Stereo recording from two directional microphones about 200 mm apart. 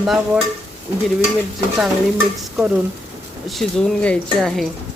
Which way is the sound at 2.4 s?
5° right (ahead or behind).